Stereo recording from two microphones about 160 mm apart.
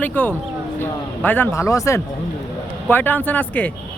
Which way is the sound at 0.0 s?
10° left (ahead or behind).